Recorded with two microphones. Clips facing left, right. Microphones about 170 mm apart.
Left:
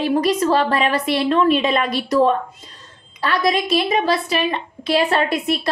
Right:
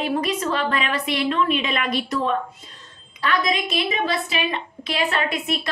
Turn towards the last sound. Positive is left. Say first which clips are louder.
# left 6 dB
turn(degrees=35)  # may be behind; listen again after turning